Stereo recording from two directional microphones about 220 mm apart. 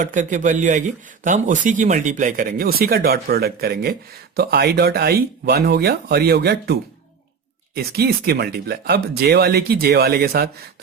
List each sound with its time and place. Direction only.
0.0 s a man's voice: 35° right (ahead or behind)
7.8 s speech: 45° right (ahead or behind)